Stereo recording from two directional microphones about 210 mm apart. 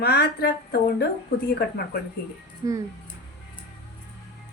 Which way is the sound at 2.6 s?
15° right (ahead or behind).